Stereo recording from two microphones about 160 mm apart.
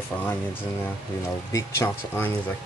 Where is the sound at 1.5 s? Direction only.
15° left (ahead or behind).